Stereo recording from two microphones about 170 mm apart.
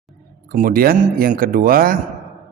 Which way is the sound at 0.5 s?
60° right (ahead or behind).